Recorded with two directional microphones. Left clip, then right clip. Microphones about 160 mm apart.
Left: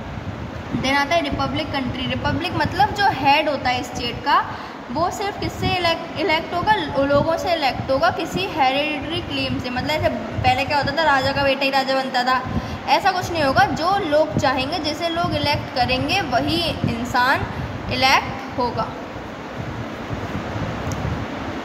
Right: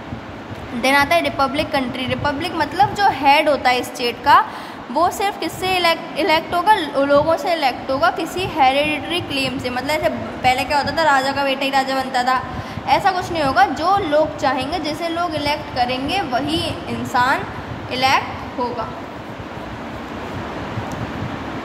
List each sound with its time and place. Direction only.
0.8 s a woman's voice: 35° right (ahead or behind)
2.4 s a woman's voice: 15° right (ahead or behind)
9.1 s a woman's voice: 35° right (ahead or behind)
9.7 s a woman's voice: 20° right (ahead or behind); by 18.2 s centre (ahead or behind)